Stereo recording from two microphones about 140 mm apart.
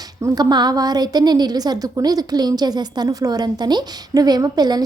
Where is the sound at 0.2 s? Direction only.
25° right (ahead or behind).